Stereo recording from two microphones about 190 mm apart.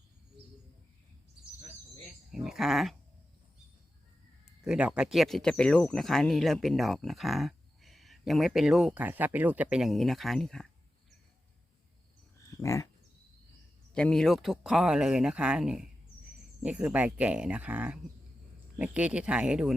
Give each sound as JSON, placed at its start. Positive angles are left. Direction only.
{"t": 2.3, "sound": "speech", "side_deg": 0}
{"t": 4.6, "sound": "speech", "side_deg": -5}
{"t": 12.5, "sound": "a sound", "side_deg": 15}
{"t": 13.9, "sound": "speech", "side_deg": 5}